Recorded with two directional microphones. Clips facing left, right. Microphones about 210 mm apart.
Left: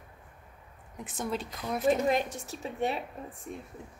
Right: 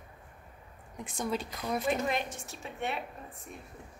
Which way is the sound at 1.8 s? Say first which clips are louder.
Left 8 dB; 40° left (ahead or behind).